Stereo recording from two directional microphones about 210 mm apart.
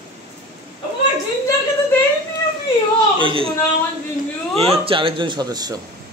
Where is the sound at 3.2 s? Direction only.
25° right (ahead or behind).